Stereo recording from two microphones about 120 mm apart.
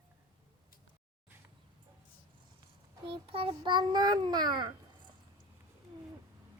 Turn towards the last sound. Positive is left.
turn(degrees=-35)  # may be behind; listen again after turning